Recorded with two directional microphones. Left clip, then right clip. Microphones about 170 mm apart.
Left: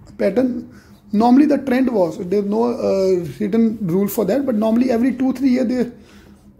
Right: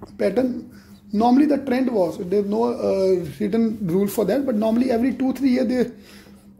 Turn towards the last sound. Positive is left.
turn(degrees=0)  # may be behind; listen again after turning